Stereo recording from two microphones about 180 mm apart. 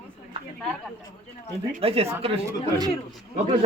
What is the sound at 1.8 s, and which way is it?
Speech, 35° right (ahead or behind).